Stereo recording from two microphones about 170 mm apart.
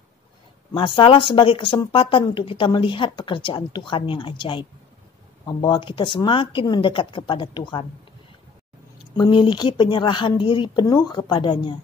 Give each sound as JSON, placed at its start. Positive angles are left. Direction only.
{"t": 0.7, "sound": "speech", "side_deg": 30}
{"t": 9.1, "sound": "speech", "side_deg": 25}